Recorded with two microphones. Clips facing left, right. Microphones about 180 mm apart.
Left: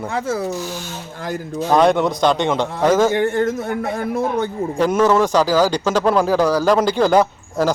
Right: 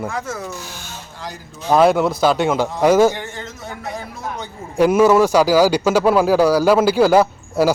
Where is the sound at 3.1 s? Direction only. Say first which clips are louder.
Left 13 dB; 55° left (ahead or behind).